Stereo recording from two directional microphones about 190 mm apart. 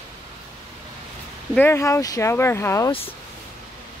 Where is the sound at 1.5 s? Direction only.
10° left (ahead or behind).